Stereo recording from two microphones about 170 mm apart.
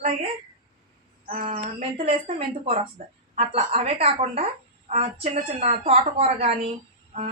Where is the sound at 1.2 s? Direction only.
40° right (ahead or behind).